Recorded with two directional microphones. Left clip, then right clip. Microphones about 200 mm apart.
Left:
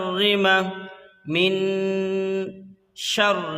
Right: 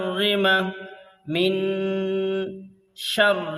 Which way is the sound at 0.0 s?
20° left (ahead or behind).